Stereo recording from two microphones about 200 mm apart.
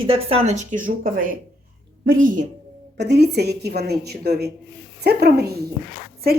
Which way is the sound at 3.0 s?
55° right (ahead or behind).